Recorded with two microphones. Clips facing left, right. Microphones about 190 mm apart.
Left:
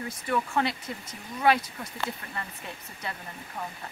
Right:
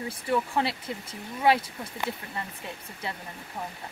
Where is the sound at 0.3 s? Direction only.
25° right (ahead or behind).